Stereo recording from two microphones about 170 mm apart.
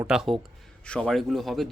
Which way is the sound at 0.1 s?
Centre (ahead or behind).